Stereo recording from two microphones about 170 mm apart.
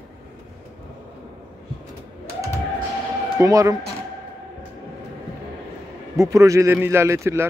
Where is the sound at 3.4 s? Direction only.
20° right (ahead or behind).